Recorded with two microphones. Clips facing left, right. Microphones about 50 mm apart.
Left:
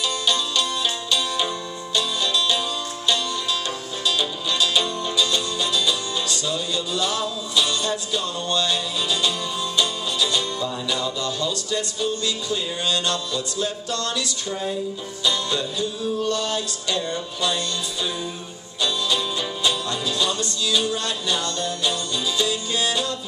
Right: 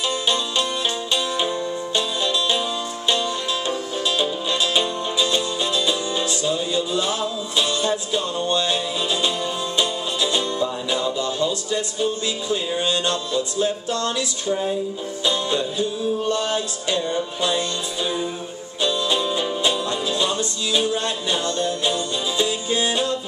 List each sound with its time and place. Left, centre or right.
1.1 s music: right
4.2 s music: right
15.2 s music: right
18.8 s music: right